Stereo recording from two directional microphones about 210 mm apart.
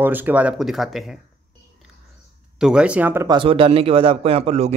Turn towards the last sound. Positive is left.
turn(degrees=-30)  # may be behind; listen again after turning